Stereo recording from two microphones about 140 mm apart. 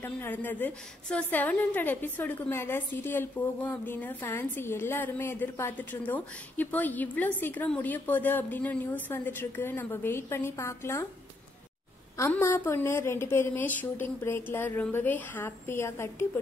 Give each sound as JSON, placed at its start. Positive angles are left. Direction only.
{"t": 0.0, "sound": "a woman's voice", "side_deg": 15}
{"t": 12.2, "sound": "a woman's voice", "side_deg": 20}